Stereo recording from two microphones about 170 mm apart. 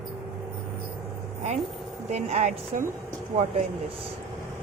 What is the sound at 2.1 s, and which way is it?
Speech, 40° right (ahead or behind).